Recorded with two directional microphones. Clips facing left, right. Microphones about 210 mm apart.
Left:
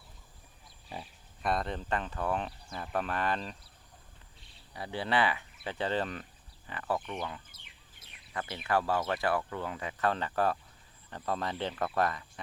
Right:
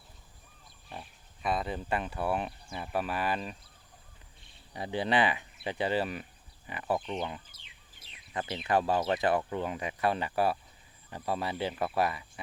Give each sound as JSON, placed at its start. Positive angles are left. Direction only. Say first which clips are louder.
{"t": 0.9, "sound": "speech", "louder": "left 2 dB", "side_deg": 0}
{"t": 4.7, "sound": "speech", "louder": "right 3 dB", "side_deg": -20}
{"t": 7.5, "sound": "bird", "louder": "left 1 dB", "side_deg": 55}
{"t": 8.3, "sound": "speech", "louder": "right 2 dB", "side_deg": -20}